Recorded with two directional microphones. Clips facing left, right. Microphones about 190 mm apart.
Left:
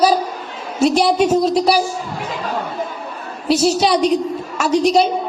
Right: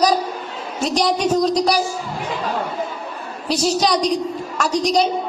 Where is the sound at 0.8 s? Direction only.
5° left (ahead or behind).